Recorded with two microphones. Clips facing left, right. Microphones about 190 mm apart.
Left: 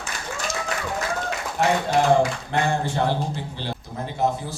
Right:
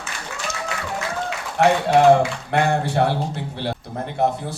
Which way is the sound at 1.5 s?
65° right (ahead or behind).